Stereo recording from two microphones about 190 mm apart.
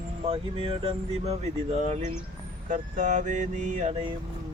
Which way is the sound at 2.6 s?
40° right (ahead or behind).